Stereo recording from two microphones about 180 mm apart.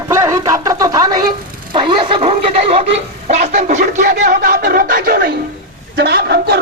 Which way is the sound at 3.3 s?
35° right (ahead or behind).